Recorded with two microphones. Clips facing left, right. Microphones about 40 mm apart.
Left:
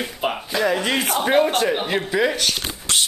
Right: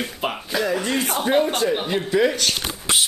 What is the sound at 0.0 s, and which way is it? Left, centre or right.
Speech, centre.